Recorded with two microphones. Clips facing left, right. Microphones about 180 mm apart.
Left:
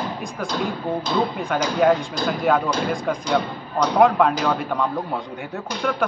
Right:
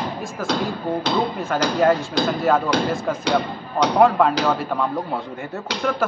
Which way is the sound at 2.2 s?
70° right (ahead or behind).